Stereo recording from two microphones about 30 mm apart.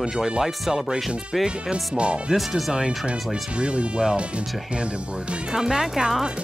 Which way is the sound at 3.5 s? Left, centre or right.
Right.